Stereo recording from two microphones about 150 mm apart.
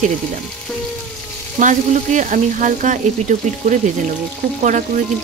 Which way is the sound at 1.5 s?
55° right (ahead or behind).